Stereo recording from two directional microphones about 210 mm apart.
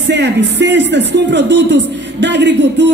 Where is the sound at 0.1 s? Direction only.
55° right (ahead or behind).